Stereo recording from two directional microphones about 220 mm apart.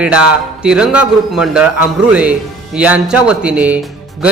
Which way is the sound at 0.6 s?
5° right (ahead or behind).